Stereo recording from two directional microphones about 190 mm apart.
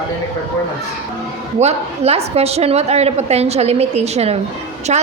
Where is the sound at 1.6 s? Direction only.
35° right (ahead or behind).